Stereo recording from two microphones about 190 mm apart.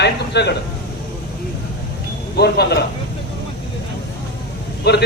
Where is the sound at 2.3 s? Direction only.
60° left (ahead or behind).